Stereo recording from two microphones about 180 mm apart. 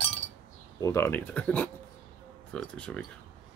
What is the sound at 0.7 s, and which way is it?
Speech, 15° left (ahead or behind).